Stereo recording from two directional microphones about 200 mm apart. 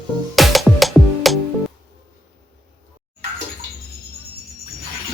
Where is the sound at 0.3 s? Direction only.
Centre (ahead or behind).